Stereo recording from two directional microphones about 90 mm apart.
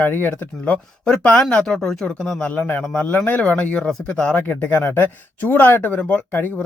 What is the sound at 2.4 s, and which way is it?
Speech, 20° left (ahead or behind).